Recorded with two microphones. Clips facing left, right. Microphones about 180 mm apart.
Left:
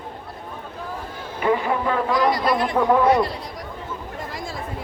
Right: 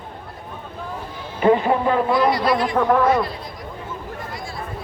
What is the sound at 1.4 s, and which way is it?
Speech, 25° right (ahead or behind).